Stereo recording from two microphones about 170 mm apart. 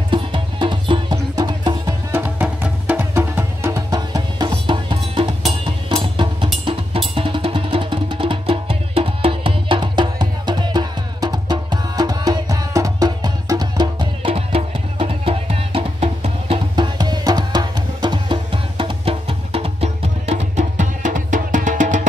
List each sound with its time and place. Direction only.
0.1 s music: 30° right (ahead or behind)
2.1 s music: 10° right (ahead or behind); by 22.0 s 45° right (ahead or behind)